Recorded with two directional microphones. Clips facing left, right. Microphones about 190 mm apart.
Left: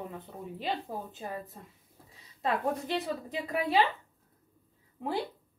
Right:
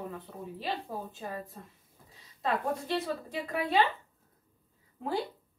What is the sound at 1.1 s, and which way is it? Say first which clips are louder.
Speech: even; 20° left (ahead or behind).